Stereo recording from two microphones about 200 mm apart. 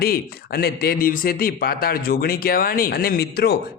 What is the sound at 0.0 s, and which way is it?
Speech, 50° left (ahead or behind).